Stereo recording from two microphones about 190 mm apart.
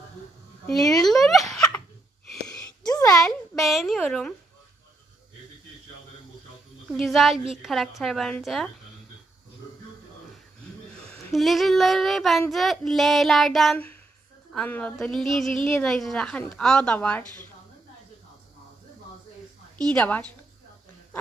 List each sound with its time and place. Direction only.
1.0 s giggle: centre (ahead or behind)
2.5 s a sound: 20° left (ahead or behind)
3.1 s a sound: 5° left (ahead or behind)
6.9 s a woman's voice: centre (ahead or behind)
11.3 s a woman's voice: centre (ahead or behind)
19.8 s a woman's voice: 5° left (ahead or behind)